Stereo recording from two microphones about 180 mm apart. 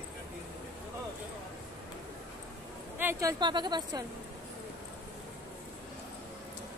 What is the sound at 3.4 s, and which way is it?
Speech, 25° right (ahead or behind).